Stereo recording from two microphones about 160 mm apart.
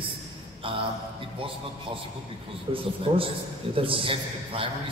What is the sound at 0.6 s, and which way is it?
Speech, 35° right (ahead or behind).